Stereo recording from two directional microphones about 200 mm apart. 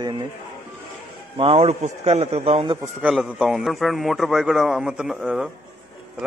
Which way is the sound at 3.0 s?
Centre (ahead or behind).